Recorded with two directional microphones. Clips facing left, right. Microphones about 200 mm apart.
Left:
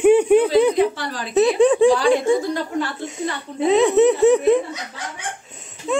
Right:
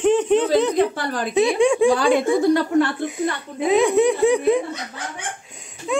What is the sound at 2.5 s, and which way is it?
Speech, 65° right (ahead or behind).